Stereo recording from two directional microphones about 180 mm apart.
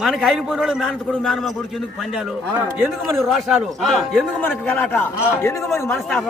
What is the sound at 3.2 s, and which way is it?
A man's voice, centre (ahead or behind).